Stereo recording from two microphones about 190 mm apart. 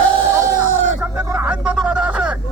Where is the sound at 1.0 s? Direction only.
5° right (ahead or behind).